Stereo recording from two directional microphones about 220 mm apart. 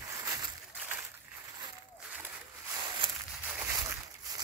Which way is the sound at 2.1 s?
10° right (ahead or behind).